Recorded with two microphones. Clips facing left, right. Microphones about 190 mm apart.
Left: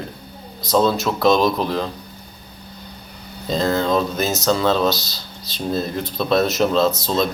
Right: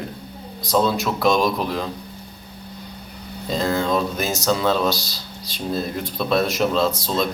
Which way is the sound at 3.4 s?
10° right (ahead or behind).